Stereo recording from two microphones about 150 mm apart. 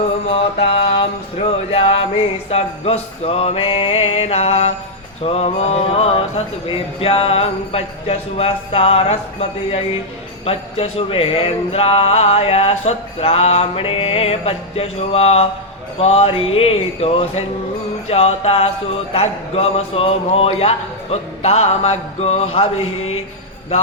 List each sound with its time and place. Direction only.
0.3 s music: 40° left (ahead or behind)
2.5 s speech: 45° left (ahead or behind)